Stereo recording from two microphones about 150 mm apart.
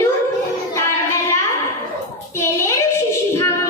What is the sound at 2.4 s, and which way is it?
Child singing, 20° left (ahead or behind).